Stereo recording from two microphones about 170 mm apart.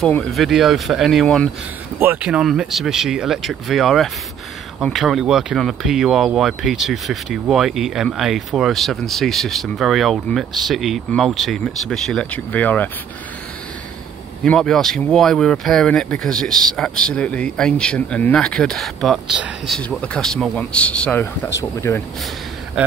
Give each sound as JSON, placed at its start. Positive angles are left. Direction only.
{"t": 0.0, "sound": "speech", "side_deg": 5}
{"t": 2.0, "sound": "speech", "side_deg": -10}
{"t": 14.4, "sound": "speech", "side_deg": 5}
{"t": 22.8, "sound": "speech", "side_deg": -5}